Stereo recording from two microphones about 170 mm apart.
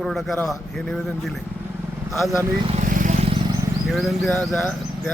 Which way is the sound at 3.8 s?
Centre (ahead or behind).